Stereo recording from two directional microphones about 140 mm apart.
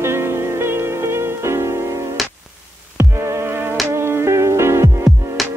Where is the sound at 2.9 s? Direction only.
20° right (ahead or behind).